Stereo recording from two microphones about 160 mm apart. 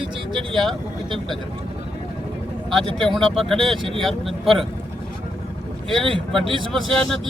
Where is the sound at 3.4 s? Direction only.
5° left (ahead or behind).